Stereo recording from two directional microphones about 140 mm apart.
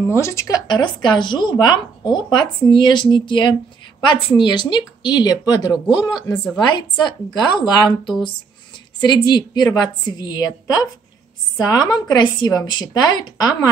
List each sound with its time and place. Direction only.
0.0 s a woman's voice: 20° left (ahead or behind)
6.3 s a woman's voice: 10° left (ahead or behind)
6.7 s a woman's voice: 30° left (ahead or behind)